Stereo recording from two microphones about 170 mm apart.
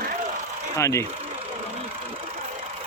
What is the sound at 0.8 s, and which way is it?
Speech, 15° left (ahead or behind).